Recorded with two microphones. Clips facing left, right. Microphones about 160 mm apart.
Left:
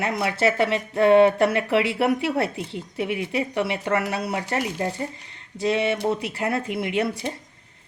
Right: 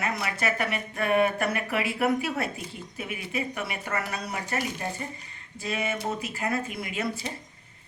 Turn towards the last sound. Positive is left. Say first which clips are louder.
# left 7 dB
turn(degrees=70)  # may be behind; listen again after turning